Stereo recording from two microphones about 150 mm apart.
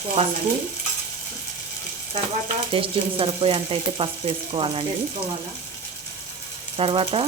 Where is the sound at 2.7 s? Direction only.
35° right (ahead or behind).